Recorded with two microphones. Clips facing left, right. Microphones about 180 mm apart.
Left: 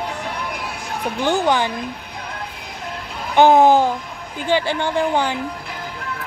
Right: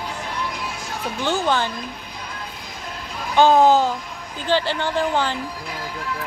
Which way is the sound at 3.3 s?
15° left (ahead or behind).